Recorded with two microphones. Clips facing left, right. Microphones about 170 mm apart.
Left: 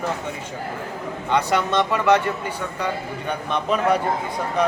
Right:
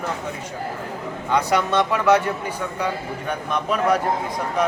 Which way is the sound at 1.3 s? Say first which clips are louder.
Right 1 dB; 10° right (ahead or behind).